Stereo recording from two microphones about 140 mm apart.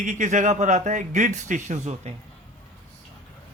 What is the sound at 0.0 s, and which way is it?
Speech, 65° right (ahead or behind).